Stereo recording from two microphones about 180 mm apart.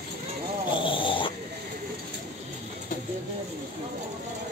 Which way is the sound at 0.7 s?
30° left (ahead or behind).